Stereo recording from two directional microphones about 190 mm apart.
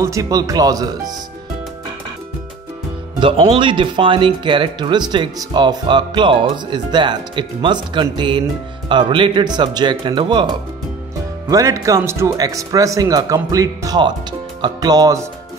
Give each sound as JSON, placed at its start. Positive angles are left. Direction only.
{"t": 0.0, "sound": "speech", "side_deg": -15}
{"t": 3.2, "sound": "speech", "side_deg": -25}